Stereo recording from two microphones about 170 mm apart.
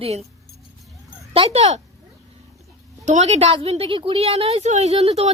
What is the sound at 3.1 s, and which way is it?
A woman's voice, 40° right (ahead or behind).